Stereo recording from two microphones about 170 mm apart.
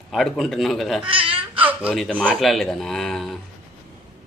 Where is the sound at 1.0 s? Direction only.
30° right (ahead or behind).